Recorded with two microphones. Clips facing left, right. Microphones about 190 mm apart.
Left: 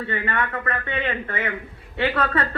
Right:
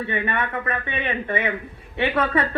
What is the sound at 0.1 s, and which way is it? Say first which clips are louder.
Speech: left 1 dB; 20° right (ahead or behind).